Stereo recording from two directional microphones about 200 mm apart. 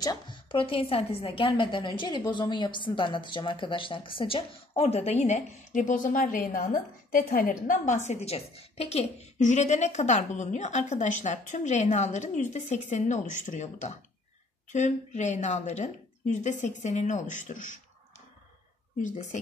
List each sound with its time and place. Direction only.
0.0 s a woman's voice: 20° left (ahead or behind); by 17.7 s 40° left (ahead or behind)
18.9 s a woman's voice: 40° left (ahead or behind)